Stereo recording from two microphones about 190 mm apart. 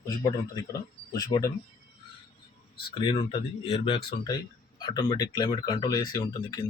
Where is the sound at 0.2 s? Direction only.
20° left (ahead or behind).